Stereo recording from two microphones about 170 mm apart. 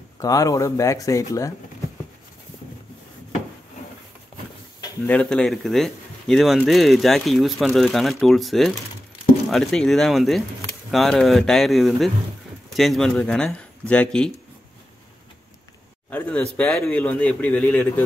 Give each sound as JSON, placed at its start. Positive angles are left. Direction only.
{"t": 0.2, "sound": "speech", "side_deg": 20}
{"t": 5.0, "sound": "speech", "side_deg": 5}
{"t": 16.1, "sound": "speech", "side_deg": 10}